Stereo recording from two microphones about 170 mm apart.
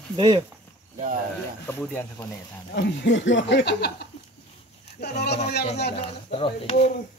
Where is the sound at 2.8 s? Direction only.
90° left; by 5.4 s 70° left (ahead or behind).